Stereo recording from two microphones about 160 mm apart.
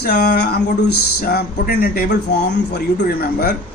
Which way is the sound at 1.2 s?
65° left (ahead or behind).